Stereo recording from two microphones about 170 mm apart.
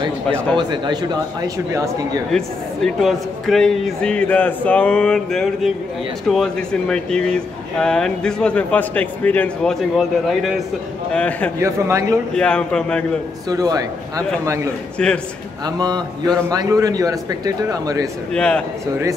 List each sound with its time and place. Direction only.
0.3 s a man's voice: 5° left (ahead or behind)
0.6 s speech: 25° right (ahead or behind)
2.3 s a man's voice: centre (ahead or behind)
11.6 s speech: 15° right (ahead or behind)
12.4 s speech: 5° left (ahead or behind)
13.5 s speech: 20° right (ahead or behind)
15.0 s speech: 5° left (ahead or behind)
15.6 s speech: 25° right (ahead or behind)
18.3 s speech: 5° left (ahead or behind)